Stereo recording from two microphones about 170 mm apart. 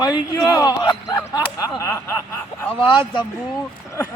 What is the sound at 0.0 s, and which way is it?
Speech, 25° left (ahead or behind).